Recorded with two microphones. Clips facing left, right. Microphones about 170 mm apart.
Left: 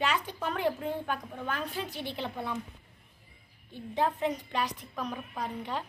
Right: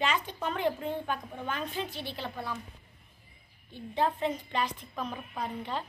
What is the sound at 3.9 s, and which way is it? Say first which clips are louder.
A woman's voice: even; 10° left (ahead or behind).